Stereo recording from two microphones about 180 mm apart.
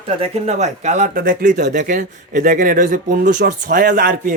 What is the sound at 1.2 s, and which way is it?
Speech, 55° right (ahead or behind).